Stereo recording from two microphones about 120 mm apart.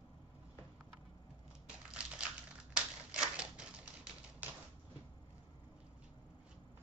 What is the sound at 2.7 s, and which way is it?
Typewriter, 5° right (ahead or behind).